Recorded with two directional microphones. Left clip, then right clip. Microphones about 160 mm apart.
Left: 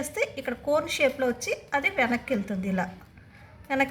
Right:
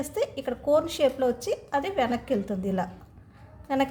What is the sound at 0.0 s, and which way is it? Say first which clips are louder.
A woman's voice: even; 35° right (ahead or behind).